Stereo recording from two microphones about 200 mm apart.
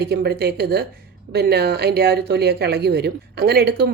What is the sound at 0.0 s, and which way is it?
A woman's voice, 55° right (ahead or behind).